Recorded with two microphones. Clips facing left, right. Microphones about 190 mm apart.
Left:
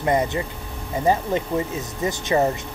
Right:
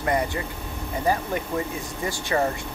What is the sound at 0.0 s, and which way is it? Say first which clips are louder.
Speech: left 4 dB; 25° left (ahead or behind).